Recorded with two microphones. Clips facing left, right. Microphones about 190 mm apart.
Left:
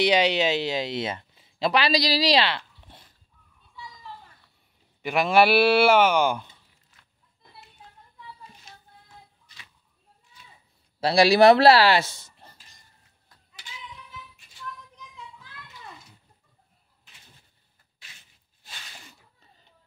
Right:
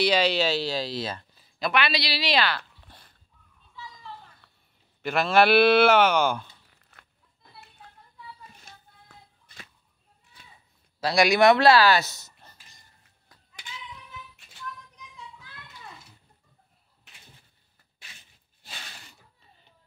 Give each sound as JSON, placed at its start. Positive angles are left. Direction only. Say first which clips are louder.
{"t": 0.0, "sound": "speech", "louder": "left 2 dB", "side_deg": 15}
{"t": 3.7, "sound": "children playing", "louder": "even", "side_deg": 15}
{"t": 5.0, "sound": "speech", "louder": "left 1 dB", "side_deg": 10}
{"t": 6.8, "sound": "a sound", "louder": "right 5 dB", "side_deg": -65}
{"t": 8.7, "sound": "a sound", "louder": "left 2 dB", "side_deg": -50}
{"t": 11.0, "sound": "speech", "louder": "left 3 dB", "side_deg": 30}